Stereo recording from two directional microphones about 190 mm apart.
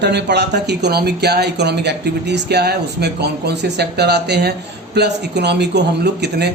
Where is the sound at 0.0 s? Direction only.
65° right (ahead or behind).